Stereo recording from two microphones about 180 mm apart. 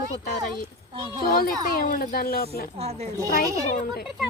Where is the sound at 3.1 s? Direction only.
15° right (ahead or behind).